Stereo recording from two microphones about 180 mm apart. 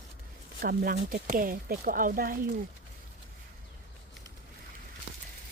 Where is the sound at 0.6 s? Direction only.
55° right (ahead or behind).